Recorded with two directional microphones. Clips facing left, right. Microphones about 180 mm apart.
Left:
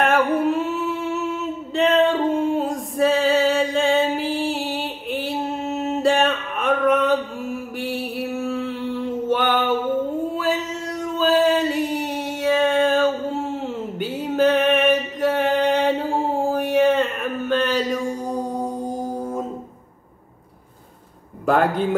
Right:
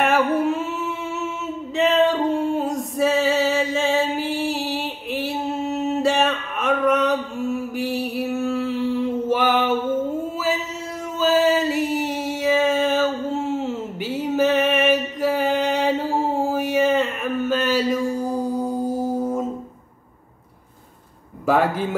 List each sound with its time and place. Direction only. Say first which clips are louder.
0.0 s singing: even; centre (ahead or behind)
1.8 s music: left 1 dB; centre (ahead or behind)
7.7 s mantra: right 2 dB; centre (ahead or behind)
10.3 s music: left 1 dB; 5° right (ahead or behind)
21.5 s a sound: left 1 dB; centre (ahead or behind)